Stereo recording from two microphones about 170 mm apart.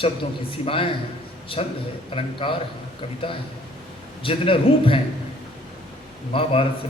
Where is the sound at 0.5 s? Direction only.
30° left (ahead or behind).